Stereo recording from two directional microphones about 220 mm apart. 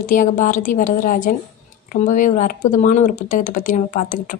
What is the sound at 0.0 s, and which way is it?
Speech, 35° left (ahead or behind).